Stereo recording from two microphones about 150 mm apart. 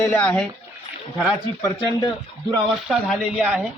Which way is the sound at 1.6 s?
25° left (ahead or behind).